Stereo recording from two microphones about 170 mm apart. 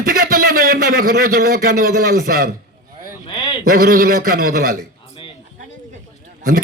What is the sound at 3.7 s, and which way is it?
A man's voice, 60° right (ahead or behind).